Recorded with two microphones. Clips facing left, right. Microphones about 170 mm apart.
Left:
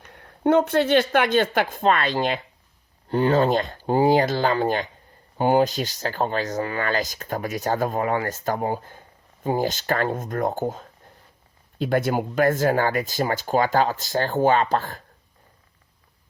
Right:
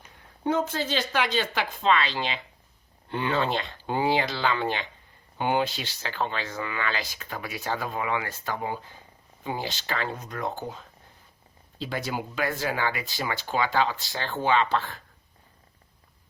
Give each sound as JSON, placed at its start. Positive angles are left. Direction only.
{"t": 0.1, "sound": "speech", "side_deg": 65}